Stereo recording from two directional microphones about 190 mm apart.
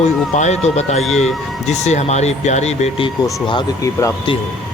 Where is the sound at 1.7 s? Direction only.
35° left (ahead or behind).